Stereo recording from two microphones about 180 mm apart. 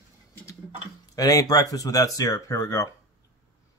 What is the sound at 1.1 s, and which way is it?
Speech, 20° left (ahead or behind).